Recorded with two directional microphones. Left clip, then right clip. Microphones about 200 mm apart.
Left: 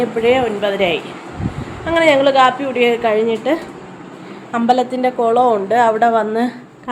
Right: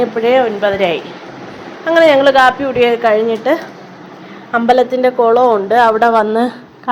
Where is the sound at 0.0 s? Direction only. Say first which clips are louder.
Right 3 dB; 5° right (ahead or behind).